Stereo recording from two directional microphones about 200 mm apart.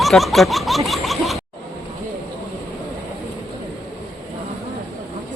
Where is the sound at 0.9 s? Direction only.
Centre (ahead or behind).